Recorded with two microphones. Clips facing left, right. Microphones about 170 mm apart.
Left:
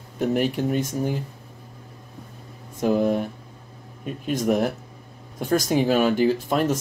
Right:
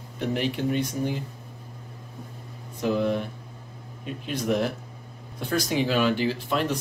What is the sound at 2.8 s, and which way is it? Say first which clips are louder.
Speech: left 4 dB; 45° left (ahead or behind).